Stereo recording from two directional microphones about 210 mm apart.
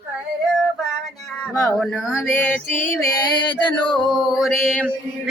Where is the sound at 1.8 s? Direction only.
Centre (ahead or behind).